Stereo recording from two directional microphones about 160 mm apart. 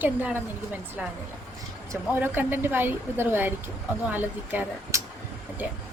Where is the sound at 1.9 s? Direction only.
15° right (ahead or behind).